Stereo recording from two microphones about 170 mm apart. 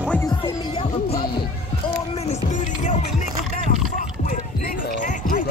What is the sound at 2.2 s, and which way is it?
Music, 40° left (ahead or behind).